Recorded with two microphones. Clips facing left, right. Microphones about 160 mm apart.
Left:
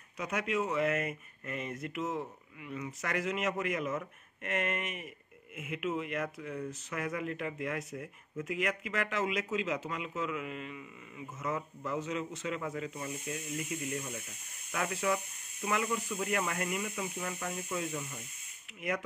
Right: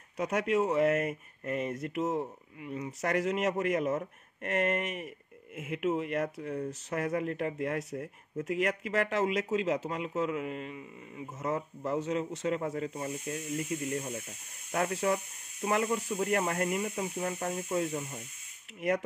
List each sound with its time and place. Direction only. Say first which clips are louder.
0.2 s speech: right 5 dB; 35° right (ahead or behind)